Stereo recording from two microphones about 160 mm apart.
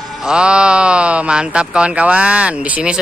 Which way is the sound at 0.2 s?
5° right (ahead or behind).